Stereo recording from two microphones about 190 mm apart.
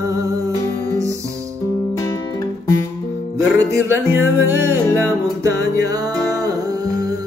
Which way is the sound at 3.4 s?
15° right (ahead or behind).